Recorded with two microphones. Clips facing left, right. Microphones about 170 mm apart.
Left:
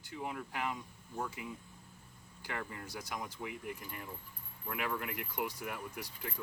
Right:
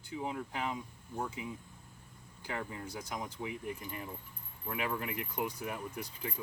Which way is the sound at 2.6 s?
20° right (ahead or behind).